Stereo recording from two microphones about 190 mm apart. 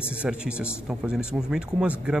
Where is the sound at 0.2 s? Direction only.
5° right (ahead or behind).